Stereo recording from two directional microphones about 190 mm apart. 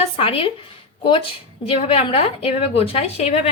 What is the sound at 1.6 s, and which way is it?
A woman's voice, 30° left (ahead or behind).